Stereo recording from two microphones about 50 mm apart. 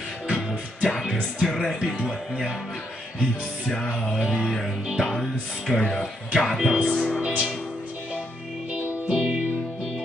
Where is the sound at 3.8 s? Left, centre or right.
Left.